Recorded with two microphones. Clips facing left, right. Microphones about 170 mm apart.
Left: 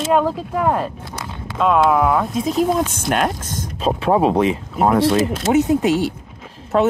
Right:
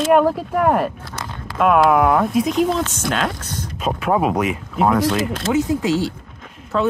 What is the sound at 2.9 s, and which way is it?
Speech, 50° left (ahead or behind).